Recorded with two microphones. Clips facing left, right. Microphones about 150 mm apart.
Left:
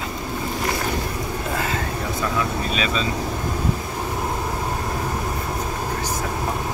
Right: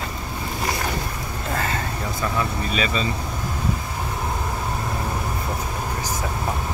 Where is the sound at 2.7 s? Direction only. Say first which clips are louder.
Right 2 dB; centre (ahead or behind).